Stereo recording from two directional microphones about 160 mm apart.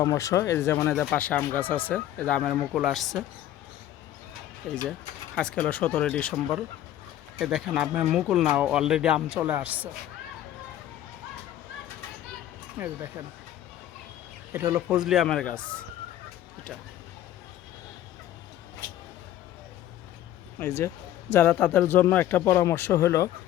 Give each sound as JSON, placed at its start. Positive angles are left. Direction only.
{"t": 0.0, "sound": "speech", "side_deg": 20}
{"t": 4.9, "sound": "speech", "side_deg": 5}
{"t": 12.8, "sound": "speech", "side_deg": -15}
{"t": 14.5, "sound": "speech", "side_deg": -15}
{"t": 20.6, "sound": "speech", "side_deg": 15}